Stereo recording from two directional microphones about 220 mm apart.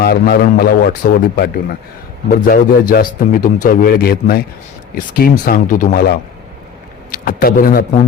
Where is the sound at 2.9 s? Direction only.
40° left (ahead or behind).